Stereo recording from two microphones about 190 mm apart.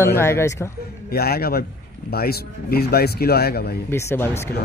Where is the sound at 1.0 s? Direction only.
55° left (ahead or behind).